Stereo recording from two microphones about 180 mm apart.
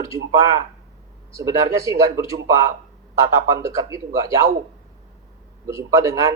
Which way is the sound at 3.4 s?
20° right (ahead or behind).